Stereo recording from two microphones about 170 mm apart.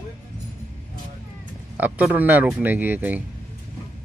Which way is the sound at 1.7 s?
10° right (ahead or behind).